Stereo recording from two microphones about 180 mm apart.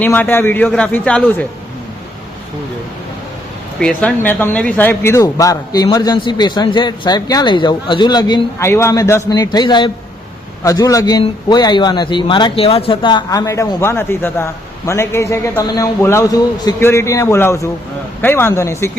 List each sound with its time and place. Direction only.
0.0 s a man's voice: 10° left (ahead or behind)
3.8 s a man's voice: 5° left (ahead or behind)